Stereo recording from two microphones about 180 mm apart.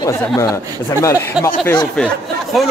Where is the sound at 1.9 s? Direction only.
Centre (ahead or behind).